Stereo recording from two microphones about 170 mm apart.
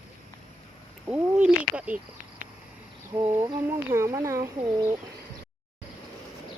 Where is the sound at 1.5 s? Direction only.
10° right (ahead or behind).